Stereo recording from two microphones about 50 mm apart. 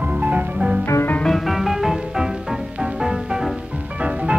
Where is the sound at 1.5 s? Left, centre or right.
Centre.